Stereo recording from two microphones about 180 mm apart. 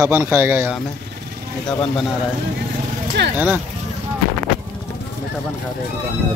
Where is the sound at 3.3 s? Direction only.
10° right (ahead or behind).